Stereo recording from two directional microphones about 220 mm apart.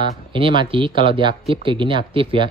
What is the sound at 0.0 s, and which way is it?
Speech, 20° right (ahead or behind).